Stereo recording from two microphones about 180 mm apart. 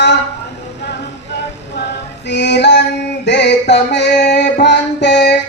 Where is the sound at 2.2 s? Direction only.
75° left (ahead or behind).